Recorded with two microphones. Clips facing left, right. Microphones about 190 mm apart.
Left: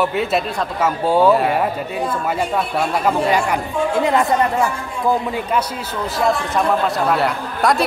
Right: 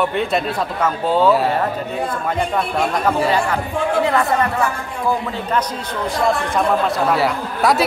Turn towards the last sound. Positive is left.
turn(degrees=0)  # may be behind; listen again after turning